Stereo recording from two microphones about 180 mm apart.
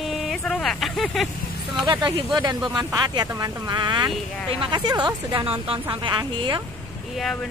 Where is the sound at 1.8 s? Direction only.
25° right (ahead or behind).